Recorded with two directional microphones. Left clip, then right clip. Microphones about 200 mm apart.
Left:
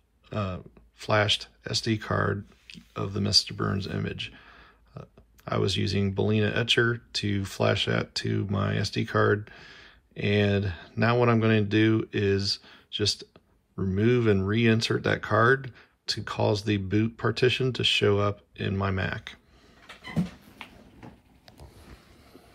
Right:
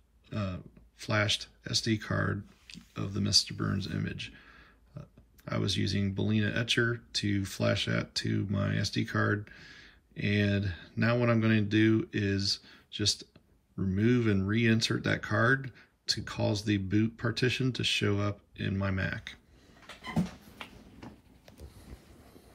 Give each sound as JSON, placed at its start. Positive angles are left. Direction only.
{"t": 0.3, "sound": "speech", "side_deg": 10}